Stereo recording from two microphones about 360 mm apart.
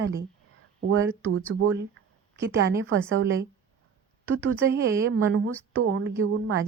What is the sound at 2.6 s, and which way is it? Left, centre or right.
Speech, right.